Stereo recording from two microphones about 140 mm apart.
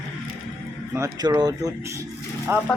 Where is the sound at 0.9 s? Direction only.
25° right (ahead or behind).